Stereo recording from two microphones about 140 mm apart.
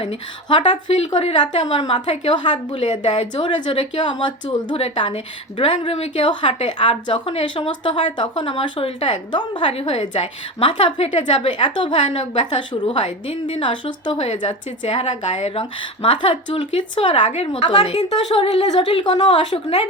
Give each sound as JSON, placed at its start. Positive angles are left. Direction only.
{"t": 0.4, "sound": "a woman's voice", "side_deg": 35}
{"t": 1.6, "sound": "a woman's voice", "side_deg": 30}
{"t": 9.0, "sound": "a woman's voice", "side_deg": 50}
{"t": 9.3, "sound": "a woman's voice", "side_deg": 35}
{"t": 14.3, "sound": "a woman's voice", "side_deg": 55}